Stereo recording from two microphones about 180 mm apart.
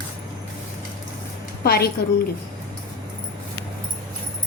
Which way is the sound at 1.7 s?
60° left (ahead or behind).